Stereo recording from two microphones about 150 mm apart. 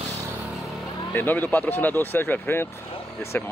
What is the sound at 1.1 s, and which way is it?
Speech, 15° left (ahead or behind).